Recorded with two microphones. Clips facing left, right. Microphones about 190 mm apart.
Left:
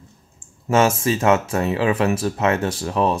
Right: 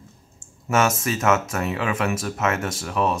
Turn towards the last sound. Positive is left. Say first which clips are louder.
# left 3 dB
turn(degrees=30)  # may be behind; listen again after turning